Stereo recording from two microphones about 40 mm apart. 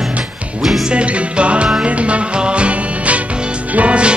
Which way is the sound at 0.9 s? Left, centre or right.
Right.